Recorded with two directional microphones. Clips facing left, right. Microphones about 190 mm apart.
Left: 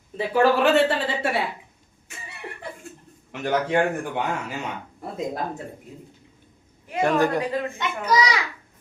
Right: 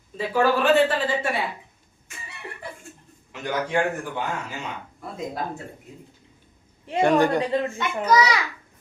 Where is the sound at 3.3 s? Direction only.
65° left (ahead or behind).